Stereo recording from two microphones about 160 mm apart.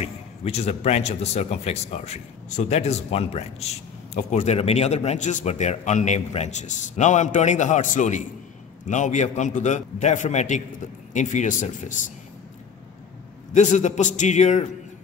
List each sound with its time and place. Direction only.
0.0 s a man's voice: 40° left (ahead or behind)
13.5 s a man's voice: 50° left (ahead or behind)